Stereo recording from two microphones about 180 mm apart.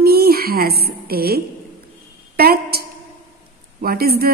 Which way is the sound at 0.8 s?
60° right (ahead or behind).